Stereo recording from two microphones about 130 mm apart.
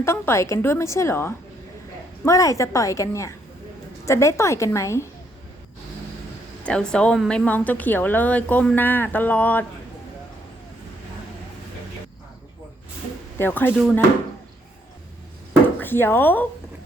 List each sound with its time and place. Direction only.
0.0 s a woman's voice: 20° left (ahead or behind)
6.7 s a woman's voice: 10° left (ahead or behind)
13.4 s a woman's voice: 15° left (ahead or behind)
15.8 s a woman's voice: 15° left (ahead or behind)